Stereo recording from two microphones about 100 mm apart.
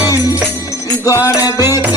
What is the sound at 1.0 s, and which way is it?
Music, 30° left (ahead or behind).